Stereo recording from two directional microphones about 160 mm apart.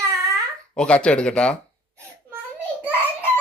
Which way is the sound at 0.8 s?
5° left (ahead or behind).